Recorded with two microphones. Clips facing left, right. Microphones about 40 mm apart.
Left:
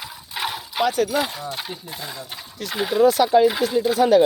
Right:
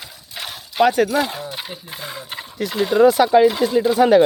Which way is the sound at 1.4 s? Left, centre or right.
Centre.